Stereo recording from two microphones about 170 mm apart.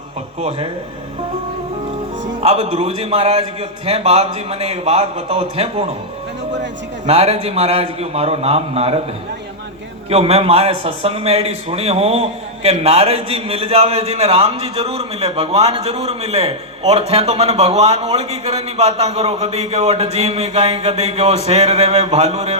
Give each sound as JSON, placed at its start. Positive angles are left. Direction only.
{"t": 2.4, "sound": "a man's voice", "side_deg": -35}
{"t": 7.1, "sound": "a man's voice", "side_deg": -40}
{"t": 10.1, "sound": "a man's voice", "side_deg": -35}